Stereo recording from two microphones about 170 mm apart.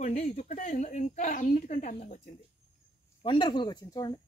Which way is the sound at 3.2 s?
30° left (ahead or behind).